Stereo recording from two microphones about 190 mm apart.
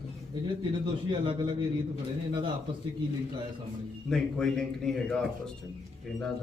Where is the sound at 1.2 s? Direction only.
25° right (ahead or behind).